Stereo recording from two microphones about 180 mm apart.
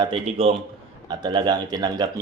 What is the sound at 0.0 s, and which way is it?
A man's voice, 30° right (ahead or behind).